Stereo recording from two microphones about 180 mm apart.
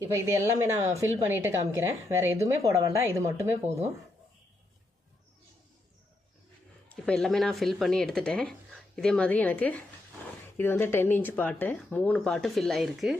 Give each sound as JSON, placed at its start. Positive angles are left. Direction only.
{"t": 0.0, "sound": "a woman's voice", "side_deg": -15}
{"t": 6.9, "sound": "speech", "side_deg": 5}